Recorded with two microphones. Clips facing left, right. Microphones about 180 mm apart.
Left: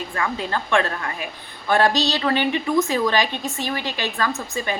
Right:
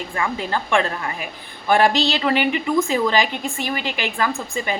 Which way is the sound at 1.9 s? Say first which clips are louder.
Right 1 dB; 20° left (ahead or behind).